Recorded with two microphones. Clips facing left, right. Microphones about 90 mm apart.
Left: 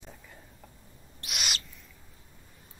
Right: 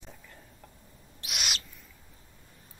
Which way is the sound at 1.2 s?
Centre (ahead or behind).